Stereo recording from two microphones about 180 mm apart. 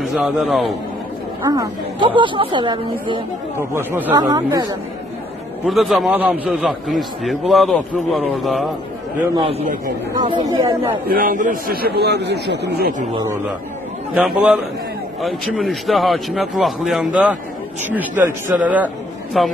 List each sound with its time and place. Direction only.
0.1 s a man's voice: centre (ahead or behind)
1.4 s speech: 20° right (ahead or behind)
3.5 s speech: 15° right (ahead or behind)
5.7 s a man's voice: centre (ahead or behind)
9.4 s a man's voice: 35° right (ahead or behind)
10.1 s speech: 25° right (ahead or behind)
11.1 s a man's voice: 50° right (ahead or behind); by 12.9 s 65° right (ahead or behind)
14.1 s a man's voice: 5° right (ahead or behind)
18.5 s speech: 10° right (ahead or behind)
19.4 s a man's voice: centre (ahead or behind)